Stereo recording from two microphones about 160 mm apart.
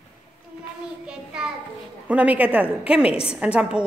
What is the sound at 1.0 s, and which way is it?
Child singing, 5° right (ahead or behind).